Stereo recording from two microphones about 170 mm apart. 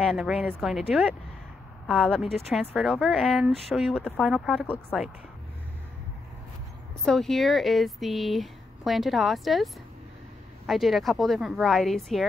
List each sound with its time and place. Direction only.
0.0 s speech: 5° right (ahead or behind)
7.1 s speech: centre (ahead or behind)
10.7 s speech: centre (ahead or behind)